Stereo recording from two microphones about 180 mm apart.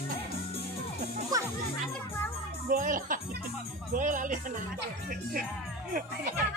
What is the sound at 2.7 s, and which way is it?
Speech, 50° right (ahead or behind).